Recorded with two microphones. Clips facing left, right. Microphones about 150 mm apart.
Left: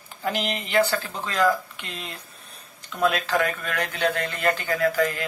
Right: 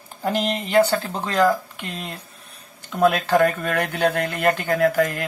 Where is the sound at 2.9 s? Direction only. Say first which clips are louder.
Right 5 dB; 45° right (ahead or behind).